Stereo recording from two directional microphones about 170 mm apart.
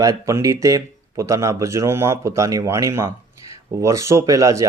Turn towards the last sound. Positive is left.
turn(degrees=-20)  # may be behind; listen again after turning